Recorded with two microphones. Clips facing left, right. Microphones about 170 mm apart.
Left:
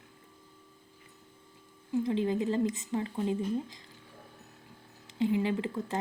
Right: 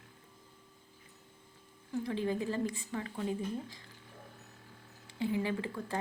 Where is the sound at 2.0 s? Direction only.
25° left (ahead or behind).